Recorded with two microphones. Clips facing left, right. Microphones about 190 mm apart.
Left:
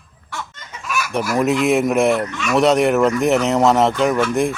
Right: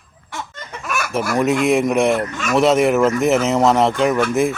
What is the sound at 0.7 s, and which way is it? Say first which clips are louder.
Chicken: even; 50° right (ahead or behind).